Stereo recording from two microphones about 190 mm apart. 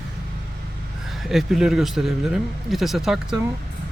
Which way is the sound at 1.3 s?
Centre (ahead or behind).